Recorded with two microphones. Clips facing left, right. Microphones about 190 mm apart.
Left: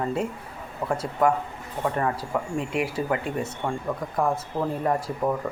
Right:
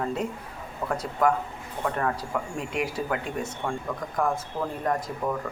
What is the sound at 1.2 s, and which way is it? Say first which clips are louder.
Speech: left 1 dB; 5° left (ahead or behind).